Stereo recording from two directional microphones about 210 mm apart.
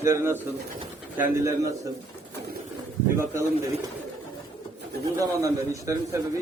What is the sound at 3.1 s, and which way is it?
Speech, 15° right (ahead or behind).